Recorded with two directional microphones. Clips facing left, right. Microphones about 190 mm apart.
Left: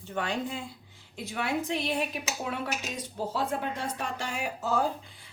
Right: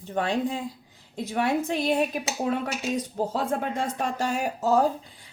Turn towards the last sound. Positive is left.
turn(degrees=-40)  # may be behind; listen again after turning